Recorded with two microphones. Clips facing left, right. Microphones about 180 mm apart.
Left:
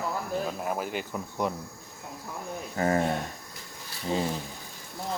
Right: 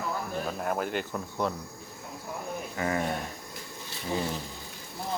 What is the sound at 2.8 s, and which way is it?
Speech, 40° left (ahead or behind).